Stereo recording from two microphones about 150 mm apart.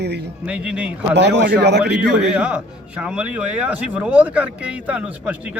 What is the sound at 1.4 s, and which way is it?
Speech, 90° right.